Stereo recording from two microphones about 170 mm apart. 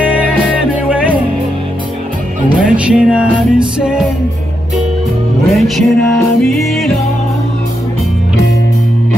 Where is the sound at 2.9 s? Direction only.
5° right (ahead or behind).